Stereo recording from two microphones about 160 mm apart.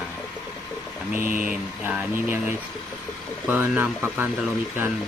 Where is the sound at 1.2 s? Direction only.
60° right (ahead or behind).